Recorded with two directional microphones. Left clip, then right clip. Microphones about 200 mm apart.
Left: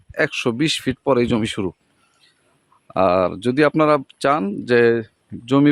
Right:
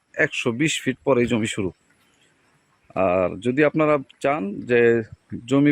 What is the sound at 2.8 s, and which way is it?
Speech, 20° left (ahead or behind).